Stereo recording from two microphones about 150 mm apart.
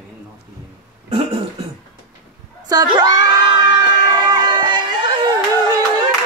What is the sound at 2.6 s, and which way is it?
Crowd, 25° right (ahead or behind).